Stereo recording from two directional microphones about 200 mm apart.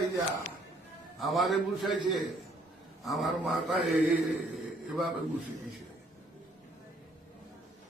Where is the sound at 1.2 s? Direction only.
Centre (ahead or behind).